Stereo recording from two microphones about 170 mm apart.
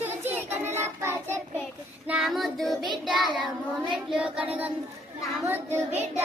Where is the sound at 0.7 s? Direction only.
15° right (ahead or behind).